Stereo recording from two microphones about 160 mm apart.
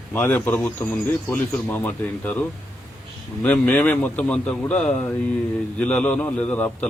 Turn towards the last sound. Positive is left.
turn(degrees=10)  # may be behind; listen again after turning